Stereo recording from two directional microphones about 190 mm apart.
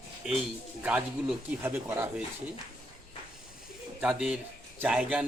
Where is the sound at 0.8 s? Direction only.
5° right (ahead or behind).